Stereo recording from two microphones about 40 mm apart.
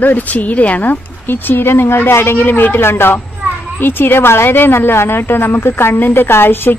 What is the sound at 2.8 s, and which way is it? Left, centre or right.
Speech, left.